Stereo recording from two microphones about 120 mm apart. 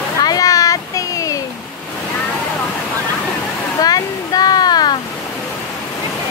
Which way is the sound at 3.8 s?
30° left (ahead or behind).